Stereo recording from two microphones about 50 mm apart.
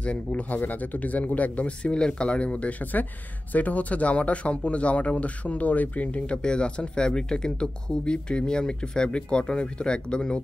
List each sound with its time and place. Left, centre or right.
0.0 s speech: left